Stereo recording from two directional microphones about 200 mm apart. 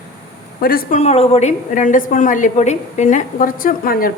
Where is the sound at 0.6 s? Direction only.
50° left (ahead or behind).